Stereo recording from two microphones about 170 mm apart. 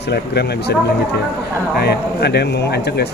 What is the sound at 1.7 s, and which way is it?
Speech, 70° left (ahead or behind).